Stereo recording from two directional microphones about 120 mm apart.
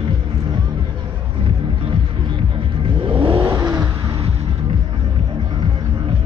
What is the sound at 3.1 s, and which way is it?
Vehicle, 45° right (ahead or behind).